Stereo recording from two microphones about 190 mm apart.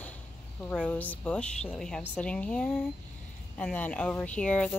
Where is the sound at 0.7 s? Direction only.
5° left (ahead or behind).